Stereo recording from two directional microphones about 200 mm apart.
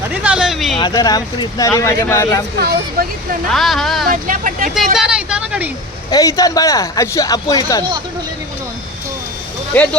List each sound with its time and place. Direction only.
0.1 s speech: 5° right (ahead or behind)
0.8 s speech: 20° left (ahead or behind)
2.6 s speech: 50° right (ahead or behind)
3.5 s speech: centre (ahead or behind)
4.1 s vehicle: 45° right (ahead or behind)
4.7 s speech: centre (ahead or behind)
6.1 s speech: 15° left (ahead or behind)